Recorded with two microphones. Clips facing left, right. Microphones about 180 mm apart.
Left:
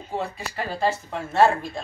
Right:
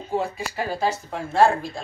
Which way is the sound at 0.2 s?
5° right (ahead or behind).